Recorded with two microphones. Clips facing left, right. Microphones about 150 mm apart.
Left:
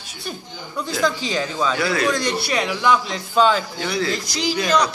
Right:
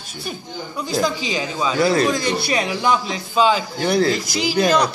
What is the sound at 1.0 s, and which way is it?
Speech, 5° right (ahead or behind).